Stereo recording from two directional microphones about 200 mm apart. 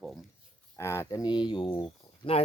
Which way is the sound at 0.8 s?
15° left (ahead or behind).